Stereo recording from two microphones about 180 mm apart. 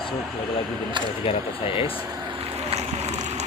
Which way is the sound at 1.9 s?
30° right (ahead or behind).